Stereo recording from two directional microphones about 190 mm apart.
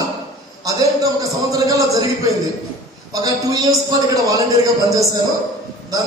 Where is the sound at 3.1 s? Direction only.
20° right (ahead or behind).